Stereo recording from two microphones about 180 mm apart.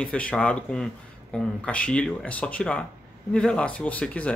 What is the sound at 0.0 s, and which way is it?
Speech, 5° left (ahead or behind).